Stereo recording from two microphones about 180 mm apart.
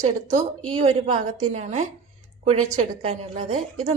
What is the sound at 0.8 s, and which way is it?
A woman's voice, 35° right (ahead or behind).